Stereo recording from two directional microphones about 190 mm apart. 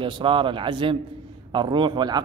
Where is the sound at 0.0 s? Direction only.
25° right (ahead or behind).